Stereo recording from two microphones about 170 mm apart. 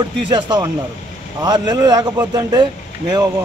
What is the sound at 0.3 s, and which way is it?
Speech, 25° right (ahead or behind).